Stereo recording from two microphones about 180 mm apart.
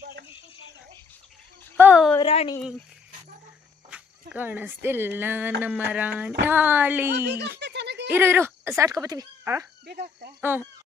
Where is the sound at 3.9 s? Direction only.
10° right (ahead or behind).